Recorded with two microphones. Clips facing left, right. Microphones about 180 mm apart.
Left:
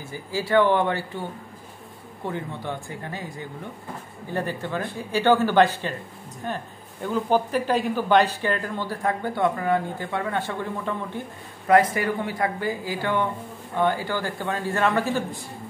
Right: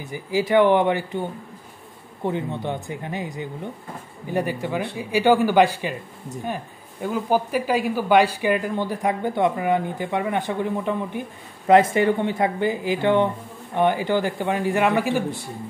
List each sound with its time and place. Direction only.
0.0 s speech: 15° right (ahead or behind)
2.2 s speech: 20° right (ahead or behind)